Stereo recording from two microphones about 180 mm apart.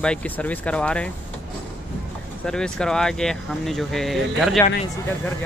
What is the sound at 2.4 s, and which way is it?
Speech, 5° left (ahead or behind).